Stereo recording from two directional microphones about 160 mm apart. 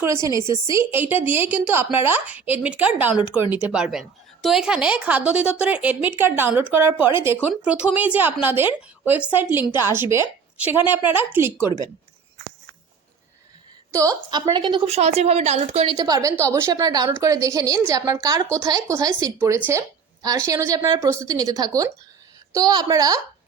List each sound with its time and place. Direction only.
0.0 s a woman's voice: 20° right (ahead or behind)
13.9 s a woman's voice: 20° right (ahead or behind); by 16.0 s 40° right (ahead or behind)
16.0 s a woman's voice: 25° right (ahead or behind)